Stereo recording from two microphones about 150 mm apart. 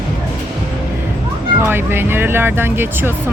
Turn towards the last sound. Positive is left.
turn(degrees=-15)  # may be behind; listen again after turning